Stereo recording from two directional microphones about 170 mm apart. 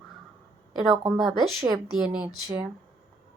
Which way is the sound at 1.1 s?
Centre (ahead or behind).